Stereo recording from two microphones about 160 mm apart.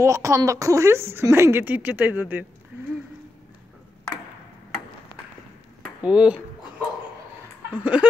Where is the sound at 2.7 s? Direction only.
10° right (ahead or behind).